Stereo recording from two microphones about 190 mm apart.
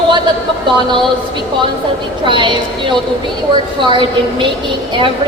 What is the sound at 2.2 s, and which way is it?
A woman's voice, 25° right (ahead or behind).